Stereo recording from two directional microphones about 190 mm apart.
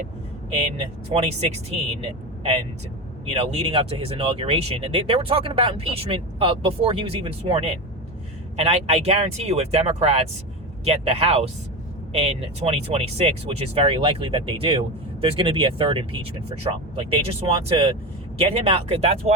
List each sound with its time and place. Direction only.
1.7 s speech: 35° right (ahead or behind)
3.2 s speech: 35° right (ahead or behind)